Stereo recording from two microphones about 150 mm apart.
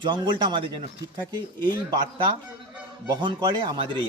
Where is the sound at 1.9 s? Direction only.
30° right (ahead or behind).